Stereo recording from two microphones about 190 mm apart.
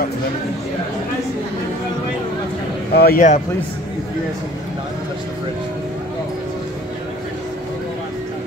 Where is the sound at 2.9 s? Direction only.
50° left (ahead or behind).